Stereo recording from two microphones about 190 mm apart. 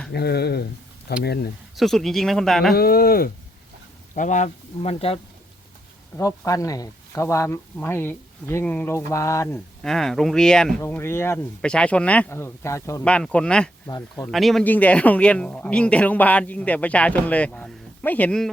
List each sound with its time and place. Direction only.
0.1 s speech: 60° left (ahead or behind)
1.7 s speech: centre (ahead or behind)
2.7 s speech: 55° left (ahead or behind)
4.1 s speech: 40° left (ahead or behind)
6.1 s speech: 15° left (ahead or behind)
9.8 s speech: centre (ahead or behind)
13.8 s speech: 20° left (ahead or behind)
14.3 s speech: centre (ahead or behind)